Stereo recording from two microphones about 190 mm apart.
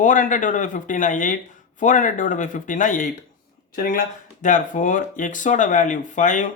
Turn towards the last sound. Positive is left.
turn(degrees=40)  # may be behind; listen again after turning